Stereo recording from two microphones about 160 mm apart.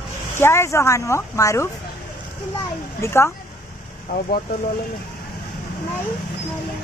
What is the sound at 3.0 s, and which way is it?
Speech, 15° left (ahead or behind).